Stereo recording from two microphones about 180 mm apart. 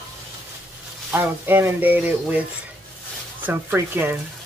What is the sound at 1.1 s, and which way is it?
Speech, 10° right (ahead or behind).